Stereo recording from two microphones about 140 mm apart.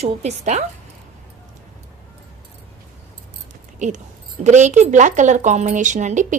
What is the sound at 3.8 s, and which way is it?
A woman's voice, 60° right (ahead or behind).